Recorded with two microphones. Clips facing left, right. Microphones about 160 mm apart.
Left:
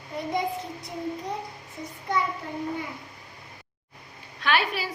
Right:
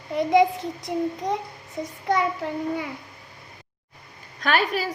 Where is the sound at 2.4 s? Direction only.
90° right.